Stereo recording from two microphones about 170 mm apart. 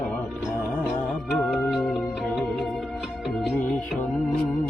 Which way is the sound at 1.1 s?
5° left (ahead or behind).